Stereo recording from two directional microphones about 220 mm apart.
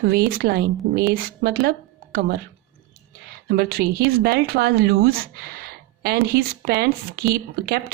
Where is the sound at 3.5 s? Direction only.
45° right (ahead or behind).